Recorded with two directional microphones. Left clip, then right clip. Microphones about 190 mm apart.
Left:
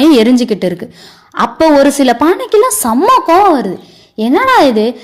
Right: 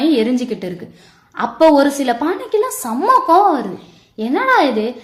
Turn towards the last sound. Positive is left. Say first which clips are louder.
# left 6 dB
turn(degrees=40)  # may be behind; listen again after turning